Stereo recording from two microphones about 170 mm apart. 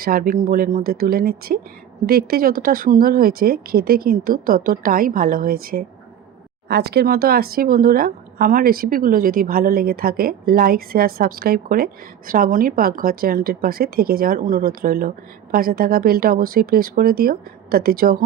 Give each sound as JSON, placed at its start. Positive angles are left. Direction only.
{"t": 0.0, "sound": "speech", "side_deg": -60}
{"t": 6.7, "sound": "speech", "side_deg": -70}